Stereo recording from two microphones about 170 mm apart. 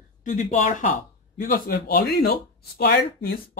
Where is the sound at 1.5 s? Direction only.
60° left (ahead or behind).